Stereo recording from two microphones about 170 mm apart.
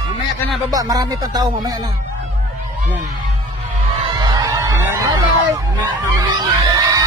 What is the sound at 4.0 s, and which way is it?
Music, 25° right (ahead or behind).